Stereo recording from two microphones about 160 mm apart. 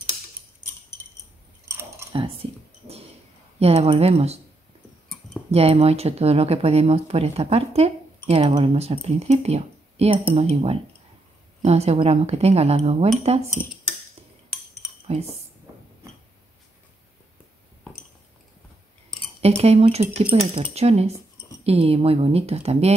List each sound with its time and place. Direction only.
1.7 s a sound: 20° right (ahead or behind)
3.5 s speech: 40° right (ahead or behind)
5.5 s speech: 40° right (ahead or behind)
15.0 s speech: 40° right (ahead or behind)
19.4 s speech: 40° right (ahead or behind)